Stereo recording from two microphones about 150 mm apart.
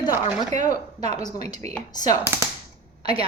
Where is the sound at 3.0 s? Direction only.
40° right (ahead or behind).